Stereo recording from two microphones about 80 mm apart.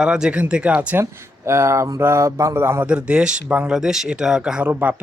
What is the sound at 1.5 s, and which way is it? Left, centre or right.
Speech, right.